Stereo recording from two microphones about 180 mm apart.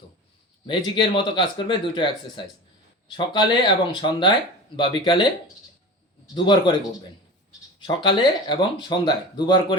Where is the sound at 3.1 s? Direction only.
25° left (ahead or behind).